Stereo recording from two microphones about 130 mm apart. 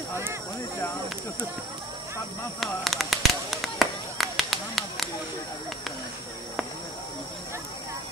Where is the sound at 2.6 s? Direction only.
Centre (ahead or behind).